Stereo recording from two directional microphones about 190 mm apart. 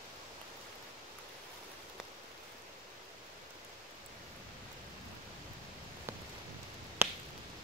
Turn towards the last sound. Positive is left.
turn(degrees=-10)  # may be behind; listen again after turning